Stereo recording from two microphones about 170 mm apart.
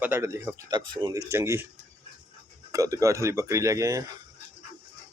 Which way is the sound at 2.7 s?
20° right (ahead or behind).